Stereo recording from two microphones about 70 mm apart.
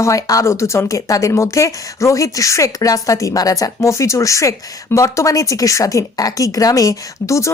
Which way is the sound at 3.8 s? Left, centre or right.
Left.